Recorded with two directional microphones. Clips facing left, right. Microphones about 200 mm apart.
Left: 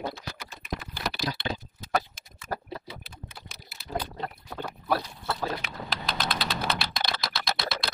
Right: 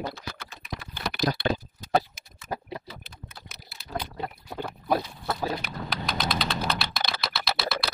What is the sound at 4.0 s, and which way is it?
Pig, 10° right (ahead or behind).